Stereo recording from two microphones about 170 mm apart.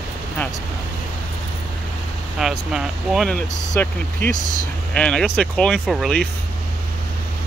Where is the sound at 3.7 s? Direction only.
10° left (ahead or behind).